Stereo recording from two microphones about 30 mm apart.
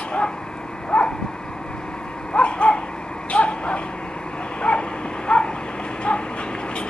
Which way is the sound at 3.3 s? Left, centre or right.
Left.